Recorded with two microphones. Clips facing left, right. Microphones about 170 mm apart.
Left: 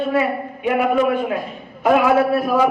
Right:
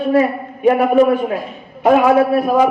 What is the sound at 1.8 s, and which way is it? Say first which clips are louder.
Speech: right 3 dB; 25° right (ahead or behind).